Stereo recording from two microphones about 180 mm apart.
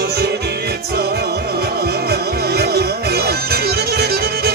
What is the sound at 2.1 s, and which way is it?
Music, 60° right (ahead or behind).